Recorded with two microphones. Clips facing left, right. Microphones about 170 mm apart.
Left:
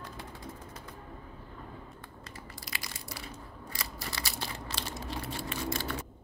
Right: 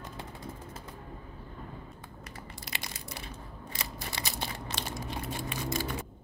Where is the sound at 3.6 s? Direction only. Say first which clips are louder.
Right 1 dB; 20° right (ahead or behind).